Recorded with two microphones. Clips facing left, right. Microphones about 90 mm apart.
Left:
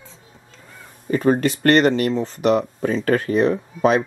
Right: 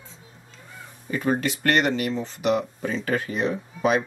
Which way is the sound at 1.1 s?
45° left (ahead or behind).